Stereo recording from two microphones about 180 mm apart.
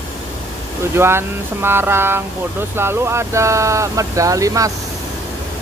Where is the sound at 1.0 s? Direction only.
15° right (ahead or behind).